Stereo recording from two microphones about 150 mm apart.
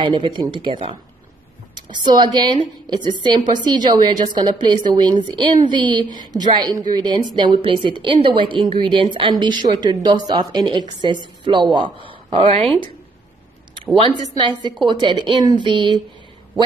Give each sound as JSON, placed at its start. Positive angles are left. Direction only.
{"t": 0.0, "sound": "a woman's voice", "side_deg": -35}
{"t": 14.2, "sound": "a woman's voice", "side_deg": -30}